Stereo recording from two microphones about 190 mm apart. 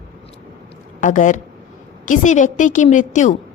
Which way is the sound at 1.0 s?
40° left (ahead or behind).